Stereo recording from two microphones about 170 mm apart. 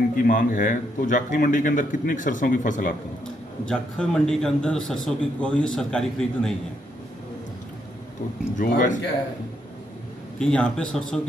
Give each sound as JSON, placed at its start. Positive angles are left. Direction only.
{"t": 0.1, "sound": "a man's voice", "side_deg": 55}
{"t": 3.6, "sound": "a man's voice", "side_deg": 5}
{"t": 8.5, "sound": "a man's voice", "side_deg": 50}
{"t": 10.4, "sound": "a man's voice", "side_deg": 5}